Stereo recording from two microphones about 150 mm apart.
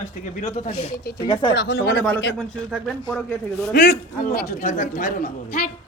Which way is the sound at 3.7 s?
90° left.